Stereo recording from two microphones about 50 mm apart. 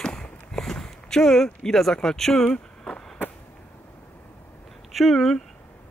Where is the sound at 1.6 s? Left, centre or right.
Centre.